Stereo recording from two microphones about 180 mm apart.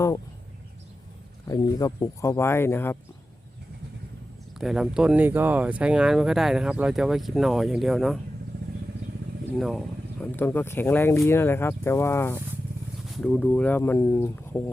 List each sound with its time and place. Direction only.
1.5 s speech: 20° left (ahead or behind)
4.5 s speech: centre (ahead or behind)
9.6 s speech: centre (ahead or behind)